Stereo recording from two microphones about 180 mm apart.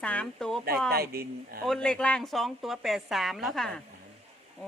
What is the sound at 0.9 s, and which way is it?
Speech, 60° right (ahead or behind).